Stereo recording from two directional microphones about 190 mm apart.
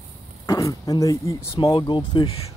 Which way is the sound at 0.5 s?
15° left (ahead or behind).